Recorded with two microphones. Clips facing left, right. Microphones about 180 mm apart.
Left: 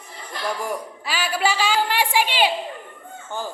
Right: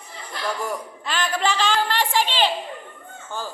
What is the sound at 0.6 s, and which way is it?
A woman's voice, 10° left (ahead or behind).